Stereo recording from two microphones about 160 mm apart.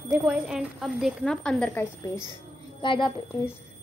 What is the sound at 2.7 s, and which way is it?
Speech, 30° left (ahead or behind).